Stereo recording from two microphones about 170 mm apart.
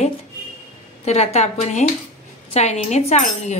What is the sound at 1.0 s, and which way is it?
Speech, 40° left (ahead or behind).